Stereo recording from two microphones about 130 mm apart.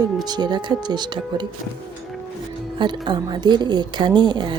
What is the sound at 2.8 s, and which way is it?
A woman's voice, 35° right (ahead or behind).